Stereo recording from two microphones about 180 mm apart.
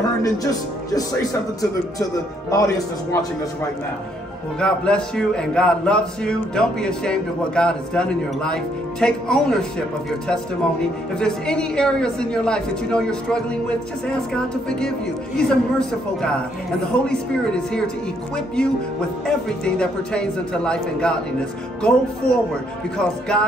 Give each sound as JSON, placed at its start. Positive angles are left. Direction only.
{"t": 0.2, "sound": "speech", "side_deg": 20}
{"t": 2.5, "sound": "speech", "side_deg": 20}
{"t": 4.6, "sound": "speech", "side_deg": 5}
{"t": 19.2, "sound": "speech", "side_deg": 5}